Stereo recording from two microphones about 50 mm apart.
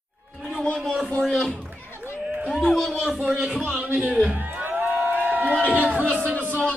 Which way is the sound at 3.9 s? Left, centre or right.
Right.